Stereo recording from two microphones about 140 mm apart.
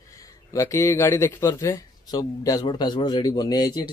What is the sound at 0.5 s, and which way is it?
Speech, 20° left (ahead or behind).